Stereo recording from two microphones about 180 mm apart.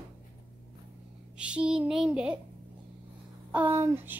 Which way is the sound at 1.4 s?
5° right (ahead or behind).